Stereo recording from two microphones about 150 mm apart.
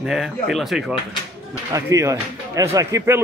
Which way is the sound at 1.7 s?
20° right (ahead or behind).